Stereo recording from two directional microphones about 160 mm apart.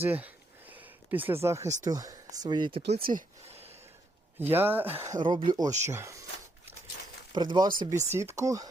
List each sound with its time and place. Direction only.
0.0 s a sound: 10° right (ahead or behind)
1.8 s speech: 20° right (ahead or behind)
3.0 s speech: 60° right (ahead or behind)
3.4 s a sound: 40° right (ahead or behind)
4.4 s speech: 10° right (ahead or behind)
5.2 s speech: 30° right (ahead or behind)
5.8 s speech: 15° right (ahead or behind)
7.3 s speech: 30° right (ahead or behind)